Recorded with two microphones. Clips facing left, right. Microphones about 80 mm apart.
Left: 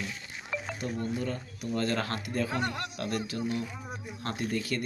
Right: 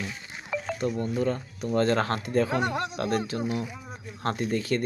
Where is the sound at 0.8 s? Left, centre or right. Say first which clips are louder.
Right 6 dB; right.